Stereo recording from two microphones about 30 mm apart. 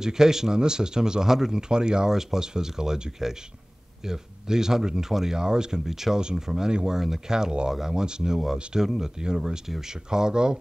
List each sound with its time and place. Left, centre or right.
0.0 s speech: centre
1.7 s speech: right
5.4 s speech: right
5.9 s speech: centre
6.1 s speech: right
8.8 s speech: centre
9.2 s speech: right